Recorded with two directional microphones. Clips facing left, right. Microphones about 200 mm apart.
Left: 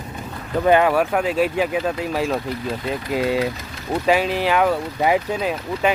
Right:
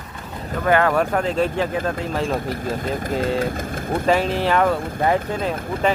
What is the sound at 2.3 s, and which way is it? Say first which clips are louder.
Speech: even; 50° right (ahead or behind).